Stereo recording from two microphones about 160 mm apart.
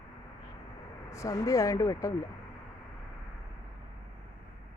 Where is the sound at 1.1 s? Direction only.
20° left (ahead or behind).